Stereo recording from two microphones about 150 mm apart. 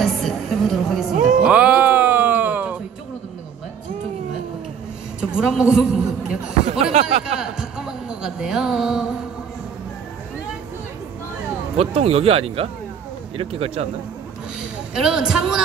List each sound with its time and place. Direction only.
0.0 s music: centre (ahead or behind)
1.4 s music: 10° right (ahead or behind)
5.3 s a woman's voice: 5° right (ahead or behind)
6.7 s speech: 45° right (ahead or behind)
7.3 s a sound: 5° right (ahead or behind)
11.7 s speech: 40° right (ahead or behind)
15.0 s a woman's voice: 5° right (ahead or behind)